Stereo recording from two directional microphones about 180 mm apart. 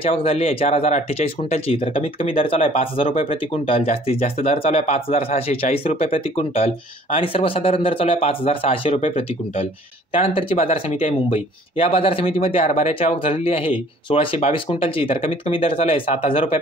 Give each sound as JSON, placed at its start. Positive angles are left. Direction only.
{"t": 0.0, "sound": "speech", "side_deg": 30}